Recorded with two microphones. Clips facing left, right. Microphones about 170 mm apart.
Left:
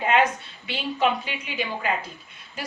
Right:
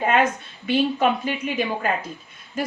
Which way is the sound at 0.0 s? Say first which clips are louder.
Right 1 dB; 45° right (ahead or behind).